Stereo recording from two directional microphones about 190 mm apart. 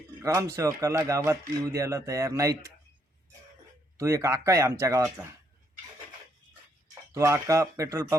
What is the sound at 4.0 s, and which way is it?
Speech, 15° right (ahead or behind).